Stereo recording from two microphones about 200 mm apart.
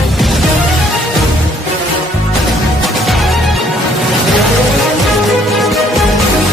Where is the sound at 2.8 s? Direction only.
Centre (ahead or behind).